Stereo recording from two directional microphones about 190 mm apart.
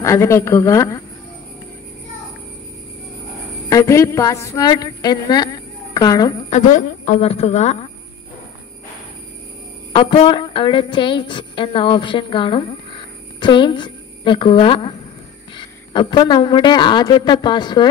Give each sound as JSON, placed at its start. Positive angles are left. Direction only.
{"t": 0.0, "sound": "a woman's voice", "side_deg": 15}
{"t": 3.6, "sound": "a woman's voice", "side_deg": 15}
{"t": 6.5, "sound": "a woman's voice", "side_deg": 40}
{"t": 9.9, "sound": "a woman's voice", "side_deg": 30}